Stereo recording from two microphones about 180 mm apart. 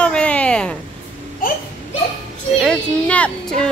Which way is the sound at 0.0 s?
5° left (ahead or behind).